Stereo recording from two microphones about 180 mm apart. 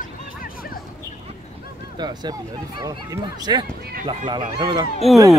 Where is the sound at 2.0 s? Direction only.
25° right (ahead or behind).